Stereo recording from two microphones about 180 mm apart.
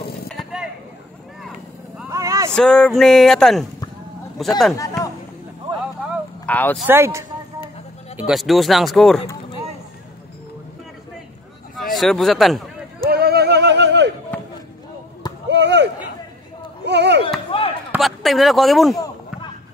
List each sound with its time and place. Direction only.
2.0 s vehicle: 15° right (ahead or behind)
2.5 s speech: 5° left (ahead or behind)
6.4 s speech: 10° left (ahead or behind)
6.9 s a man's voice: 15° right (ahead or behind)
8.3 s speech: centre (ahead or behind)
11.9 s speech: centre (ahead or behind)
13.1 s music: 60° right (ahead or behind)
15.4 s chop: 70° right (ahead or behind)
16.8 s a sound: 70° right (ahead or behind)
17.5 s chop: 30° left (ahead or behind)
17.9 s speech: centre (ahead or behind)